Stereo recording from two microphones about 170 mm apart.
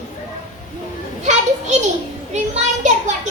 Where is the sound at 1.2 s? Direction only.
45° right (ahead or behind).